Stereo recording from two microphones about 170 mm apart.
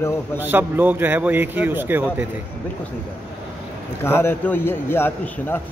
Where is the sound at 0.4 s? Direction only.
10° right (ahead or behind).